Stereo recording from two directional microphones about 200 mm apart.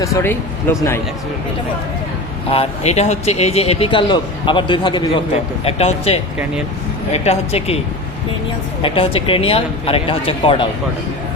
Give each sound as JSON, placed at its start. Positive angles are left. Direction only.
{"t": 0.0, "sound": "speech", "side_deg": 15}
{"t": 2.5, "sound": "speech", "side_deg": 30}
{"t": 8.8, "sound": "speech", "side_deg": 25}